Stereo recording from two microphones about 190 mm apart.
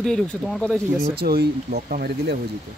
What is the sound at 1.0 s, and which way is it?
Speech, 55° right (ahead or behind).